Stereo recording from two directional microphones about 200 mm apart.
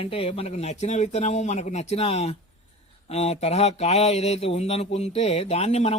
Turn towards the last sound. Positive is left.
turn(degrees=30)  # may be behind; listen again after turning